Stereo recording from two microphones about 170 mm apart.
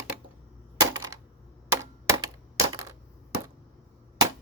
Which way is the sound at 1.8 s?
20° right (ahead or behind).